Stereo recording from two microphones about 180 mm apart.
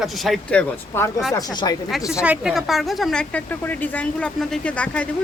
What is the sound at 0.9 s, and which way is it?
Speech, 10° left (ahead or behind).